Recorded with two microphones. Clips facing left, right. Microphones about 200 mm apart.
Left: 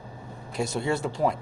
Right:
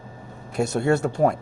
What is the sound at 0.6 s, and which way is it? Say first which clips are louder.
Speech: right 6 dB; 45° right (ahead or behind).